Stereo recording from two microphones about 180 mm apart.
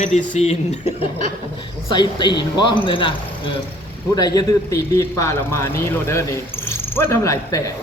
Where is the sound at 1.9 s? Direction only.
25° left (ahead or behind).